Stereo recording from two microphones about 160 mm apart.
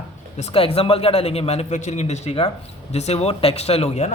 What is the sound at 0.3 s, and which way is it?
A man's voice, 35° left (ahead or behind).